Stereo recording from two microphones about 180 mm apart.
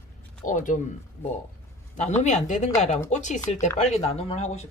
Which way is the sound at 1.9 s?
40° left (ahead or behind).